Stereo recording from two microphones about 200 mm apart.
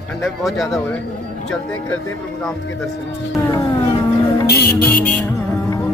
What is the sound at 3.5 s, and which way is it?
Cat, 20° left (ahead or behind).